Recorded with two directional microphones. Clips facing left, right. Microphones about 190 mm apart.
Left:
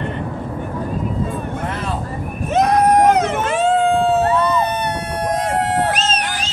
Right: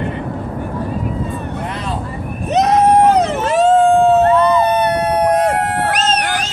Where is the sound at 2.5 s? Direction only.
20° right (ahead or behind); by 6.4 s 65° right (ahead or behind).